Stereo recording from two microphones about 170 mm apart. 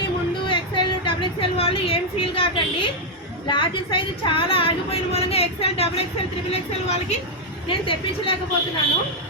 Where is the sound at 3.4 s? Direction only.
30° left (ahead or behind).